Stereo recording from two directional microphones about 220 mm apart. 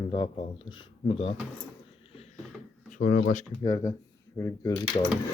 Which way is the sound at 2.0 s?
25° left (ahead or behind).